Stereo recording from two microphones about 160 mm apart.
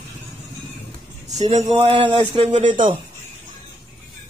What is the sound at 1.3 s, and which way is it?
Speech, 45° right (ahead or behind).